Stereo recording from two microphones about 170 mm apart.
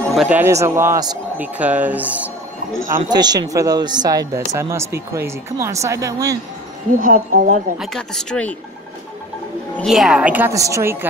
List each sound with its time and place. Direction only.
0.1 s a woman's voice: 5° right (ahead or behind)
3.1 s speech: 25° right (ahead or behind)
7.0 s speech: 50° right (ahead or behind)
7.8 s speech: centre (ahead or behind)
9.8 s a woman's voice: 5° right (ahead or behind)